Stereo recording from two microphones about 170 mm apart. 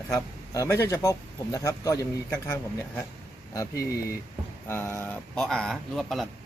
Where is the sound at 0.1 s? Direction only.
20° left (ahead or behind).